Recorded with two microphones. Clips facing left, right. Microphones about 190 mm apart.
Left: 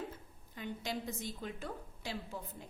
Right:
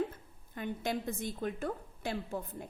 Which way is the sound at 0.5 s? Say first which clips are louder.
Right 5 dB; 55° right (ahead or behind).